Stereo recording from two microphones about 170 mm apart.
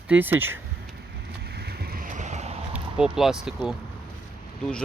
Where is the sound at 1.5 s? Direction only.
70° right (ahead or behind); by 2.6 s 40° right (ahead or behind).